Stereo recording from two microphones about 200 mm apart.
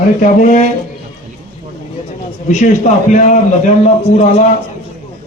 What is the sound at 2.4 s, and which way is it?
A man's voice, 40° left (ahead or behind).